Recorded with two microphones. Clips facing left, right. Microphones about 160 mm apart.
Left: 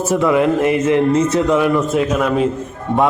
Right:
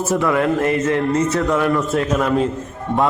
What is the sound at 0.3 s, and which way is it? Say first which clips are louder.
Speech: left 3 dB; 20° left (ahead or behind).